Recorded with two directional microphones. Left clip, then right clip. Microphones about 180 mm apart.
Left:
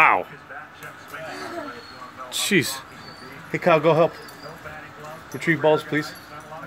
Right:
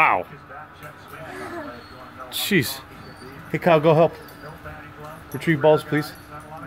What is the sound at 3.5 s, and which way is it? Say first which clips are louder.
Speech: right 1 dB; 20° right (ahead or behind).